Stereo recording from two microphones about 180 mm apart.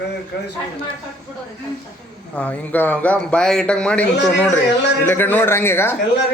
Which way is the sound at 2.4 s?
10° left (ahead or behind).